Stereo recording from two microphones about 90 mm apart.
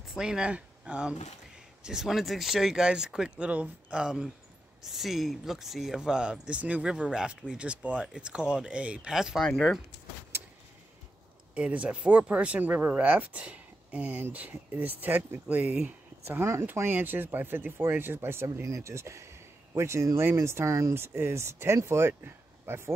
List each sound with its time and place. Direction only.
0.1 s speech: 10° right (ahead or behind)
11.5 s speech: 15° right (ahead or behind)
16.3 s speech: 30° right (ahead or behind)